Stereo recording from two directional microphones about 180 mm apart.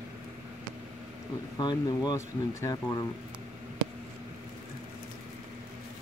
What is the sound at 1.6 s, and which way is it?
Speech, 25° left (ahead or behind).